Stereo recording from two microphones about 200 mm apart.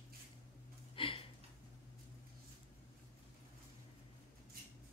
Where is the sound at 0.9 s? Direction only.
25° left (ahead or behind).